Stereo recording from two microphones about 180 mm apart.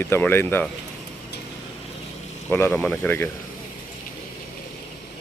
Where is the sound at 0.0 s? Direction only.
10° left (ahead or behind).